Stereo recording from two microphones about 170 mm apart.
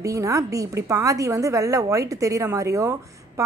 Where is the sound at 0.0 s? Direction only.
20° right (ahead or behind).